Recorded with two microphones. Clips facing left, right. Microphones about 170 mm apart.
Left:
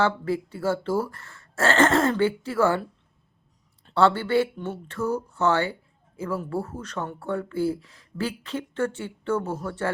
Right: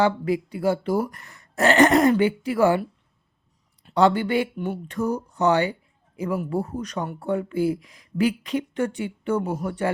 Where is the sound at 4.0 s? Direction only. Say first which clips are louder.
Right 1 dB; 15° right (ahead or behind).